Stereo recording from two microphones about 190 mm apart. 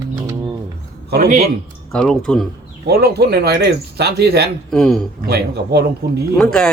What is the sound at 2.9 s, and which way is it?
Speech, 55° right (ahead or behind).